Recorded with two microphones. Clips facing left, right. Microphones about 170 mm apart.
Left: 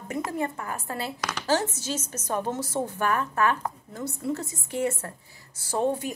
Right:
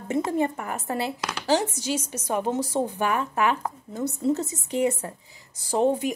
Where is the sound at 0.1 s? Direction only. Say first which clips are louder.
Right 5 dB; 25° right (ahead or behind).